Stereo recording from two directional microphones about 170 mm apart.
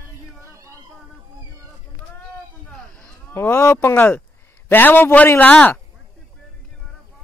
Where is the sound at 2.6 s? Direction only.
5° left (ahead or behind).